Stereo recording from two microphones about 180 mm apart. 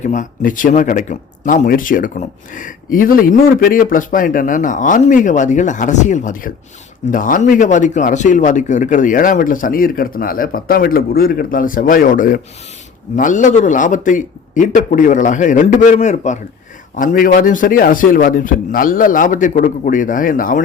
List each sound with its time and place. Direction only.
0.0 s speech: 45° left (ahead or behind)